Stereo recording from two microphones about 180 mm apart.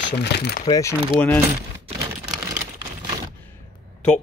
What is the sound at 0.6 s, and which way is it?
Speech, 20° left (ahead or behind).